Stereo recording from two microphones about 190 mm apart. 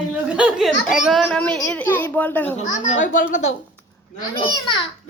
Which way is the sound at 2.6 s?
40° left (ahead or behind).